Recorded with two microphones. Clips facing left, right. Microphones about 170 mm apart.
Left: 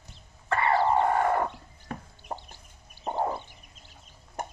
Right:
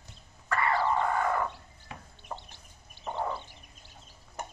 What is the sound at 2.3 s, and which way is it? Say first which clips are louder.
Chicken: left 4 dB; 35° left (ahead or behind).